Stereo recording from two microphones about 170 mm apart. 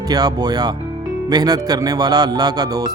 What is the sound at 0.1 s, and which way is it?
Speech, 20° right (ahead or behind).